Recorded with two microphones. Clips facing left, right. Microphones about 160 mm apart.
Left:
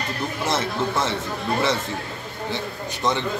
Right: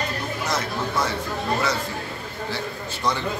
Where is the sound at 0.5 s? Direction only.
25° left (ahead or behind).